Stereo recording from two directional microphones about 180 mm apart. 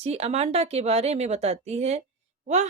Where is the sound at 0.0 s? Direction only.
35° right (ahead or behind).